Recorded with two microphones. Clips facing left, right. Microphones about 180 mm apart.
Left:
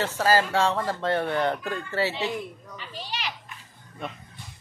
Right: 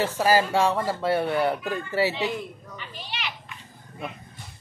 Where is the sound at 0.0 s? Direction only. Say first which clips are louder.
Right 1 dB; 15° right (ahead or behind).